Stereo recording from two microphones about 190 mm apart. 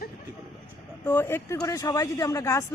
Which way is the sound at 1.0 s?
10° left (ahead or behind).